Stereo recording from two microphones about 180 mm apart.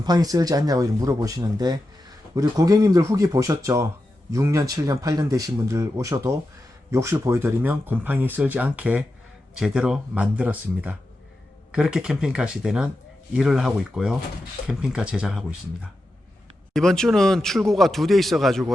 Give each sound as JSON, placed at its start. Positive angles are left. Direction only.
{"t": 0.0, "sound": "speech", "side_deg": -20}